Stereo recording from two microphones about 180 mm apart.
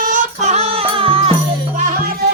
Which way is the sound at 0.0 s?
45° right (ahead or behind).